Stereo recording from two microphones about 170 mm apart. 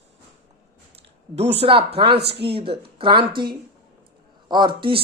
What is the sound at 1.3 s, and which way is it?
Speech, 35° right (ahead or behind).